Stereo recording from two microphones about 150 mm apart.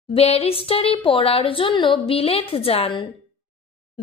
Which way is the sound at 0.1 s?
40° left (ahead or behind).